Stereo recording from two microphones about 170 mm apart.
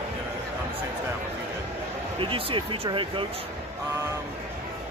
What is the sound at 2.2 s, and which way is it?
Speech, 30° right (ahead or behind).